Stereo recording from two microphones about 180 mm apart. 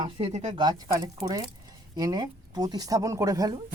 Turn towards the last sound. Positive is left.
turn(degrees=-20)  # may be behind; listen again after turning